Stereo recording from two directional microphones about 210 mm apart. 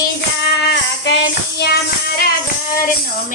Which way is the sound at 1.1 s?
55° left (ahead or behind).